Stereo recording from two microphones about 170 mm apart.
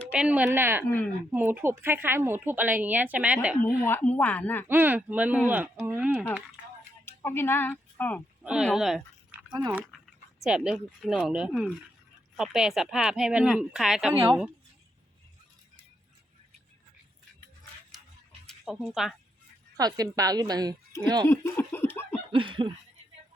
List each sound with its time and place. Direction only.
0.1 s a woman's voice: 5° right (ahead or behind)
0.9 s speech: 10° left (ahead or behind)
1.3 s a woman's voice: 10° right (ahead or behind)
3.8 s speech: 10° left (ahead or behind)
4.7 s a woman's voice: 10° right (ahead or behind)
7.0 s speech: 15° left (ahead or behind)
8.6 s speech: centre (ahead or behind)
9.5 s speech: 25° right (ahead or behind)
10.4 s speech: 5° right (ahead or behind)
18.4 s speech: 5° left (ahead or behind)
19.7 s a woman's voice: 20° right (ahead or behind)
21.2 s laughter: 15° left (ahead or behind)
22.3 s a sound: 30° right (ahead or behind)